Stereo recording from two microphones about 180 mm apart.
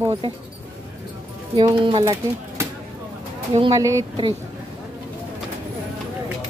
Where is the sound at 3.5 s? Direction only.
30° right (ahead or behind).